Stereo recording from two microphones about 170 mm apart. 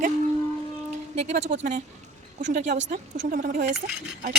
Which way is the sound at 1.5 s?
50° right (ahead or behind).